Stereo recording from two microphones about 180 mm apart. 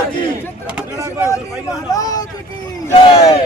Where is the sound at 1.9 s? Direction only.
20° left (ahead or behind).